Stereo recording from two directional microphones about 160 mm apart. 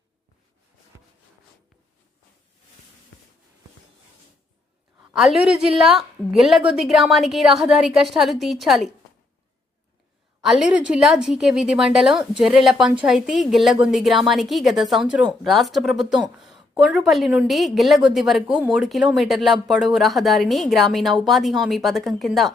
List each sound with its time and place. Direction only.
5.1 s a woman's voice: 5° right (ahead or behind)
10.4 s a woman's voice: 5° right (ahead or behind)